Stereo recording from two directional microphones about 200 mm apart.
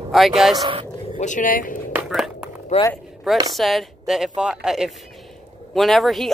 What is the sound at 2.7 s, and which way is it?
Speech, 35° left (ahead or behind).